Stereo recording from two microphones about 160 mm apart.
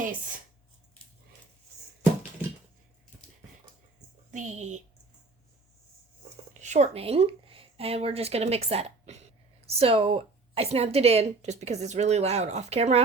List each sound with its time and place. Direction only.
0.0 s speech: 55° right (ahead or behind)
4.3 s speech: 50° right (ahead or behind)
6.5 s a woman's voice: 50° right (ahead or behind)